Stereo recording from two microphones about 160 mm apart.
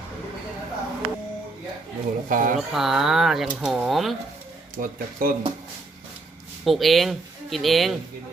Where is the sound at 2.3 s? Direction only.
60° right (ahead or behind).